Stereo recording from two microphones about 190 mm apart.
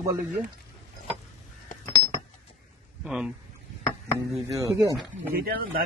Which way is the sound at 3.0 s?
5° right (ahead or behind).